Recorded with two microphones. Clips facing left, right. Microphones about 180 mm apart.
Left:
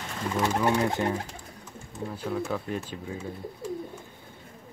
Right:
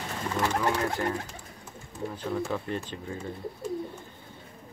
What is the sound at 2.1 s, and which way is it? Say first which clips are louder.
Speech: left 1 dB; centre (ahead or behind).